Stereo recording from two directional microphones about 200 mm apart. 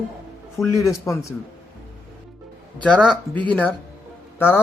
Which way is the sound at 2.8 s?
5° left (ahead or behind).